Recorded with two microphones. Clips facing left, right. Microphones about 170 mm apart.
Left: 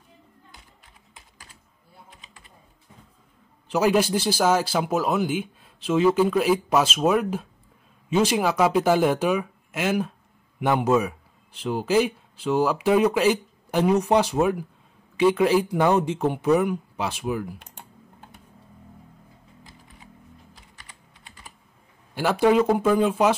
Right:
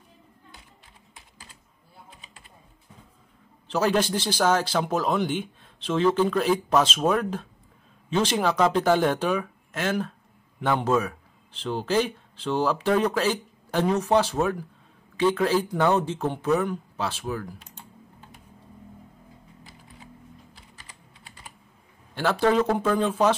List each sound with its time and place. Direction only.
3.6 s speech: 10° left (ahead or behind)
17.6 s typing: 55° left (ahead or behind)
22.1 s speech: 10° left (ahead or behind)